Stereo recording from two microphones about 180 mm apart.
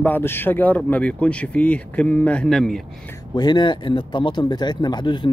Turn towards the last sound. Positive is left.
turn(degrees=25)  # may be behind; listen again after turning